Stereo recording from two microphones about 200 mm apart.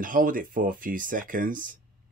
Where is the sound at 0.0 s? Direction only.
40° right (ahead or behind).